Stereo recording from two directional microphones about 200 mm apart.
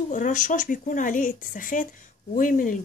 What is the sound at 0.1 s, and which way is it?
Speech, 40° left (ahead or behind).